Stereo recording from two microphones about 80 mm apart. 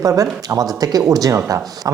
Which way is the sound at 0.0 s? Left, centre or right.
Right.